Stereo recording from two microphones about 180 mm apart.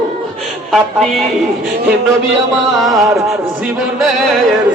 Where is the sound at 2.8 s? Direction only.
Centre (ahead or behind).